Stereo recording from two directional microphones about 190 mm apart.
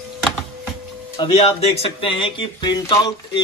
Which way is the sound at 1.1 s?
25° left (ahead or behind).